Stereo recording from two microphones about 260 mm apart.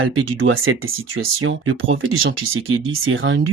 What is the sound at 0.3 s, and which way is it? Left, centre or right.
Speech, right.